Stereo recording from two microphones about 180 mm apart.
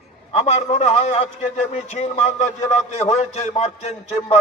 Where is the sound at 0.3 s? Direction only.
35° left (ahead or behind).